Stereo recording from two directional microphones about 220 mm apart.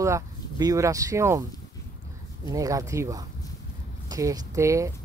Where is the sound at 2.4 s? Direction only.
15° right (ahead or behind).